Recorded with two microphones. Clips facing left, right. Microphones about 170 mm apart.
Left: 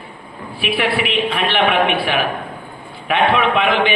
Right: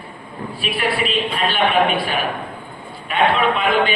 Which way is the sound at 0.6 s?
70° left (ahead or behind).